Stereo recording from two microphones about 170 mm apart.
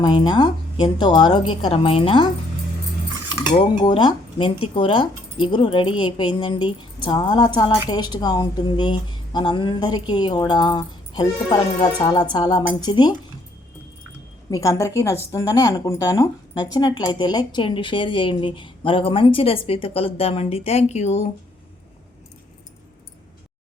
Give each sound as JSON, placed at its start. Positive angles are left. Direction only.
{"t": 0.0, "sound": "speech", "side_deg": 25}
{"t": 3.5, "sound": "speech", "side_deg": 30}
{"t": 14.5, "sound": "speech", "side_deg": 20}